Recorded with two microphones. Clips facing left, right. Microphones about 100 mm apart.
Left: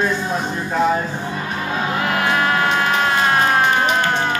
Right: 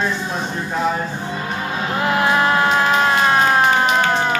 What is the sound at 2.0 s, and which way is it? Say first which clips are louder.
Music: right 4 dB; 25° right (ahead or behind).